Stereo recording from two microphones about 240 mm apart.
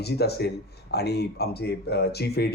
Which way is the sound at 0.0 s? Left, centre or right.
Left.